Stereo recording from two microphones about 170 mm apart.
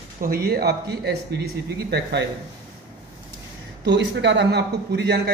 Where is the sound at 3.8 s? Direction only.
90° right.